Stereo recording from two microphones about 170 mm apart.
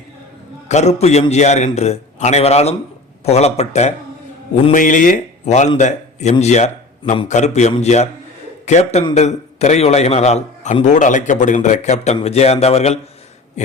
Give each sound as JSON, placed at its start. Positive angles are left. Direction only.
{"t": 0.7, "sound": "a man's voice", "side_deg": 40}